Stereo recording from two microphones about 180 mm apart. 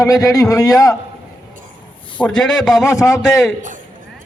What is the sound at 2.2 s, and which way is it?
A man's voice, 5° left (ahead or behind).